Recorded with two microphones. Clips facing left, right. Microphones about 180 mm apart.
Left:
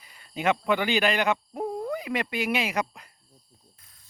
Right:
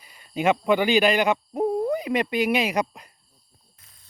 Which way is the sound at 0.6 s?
15° right (ahead or behind).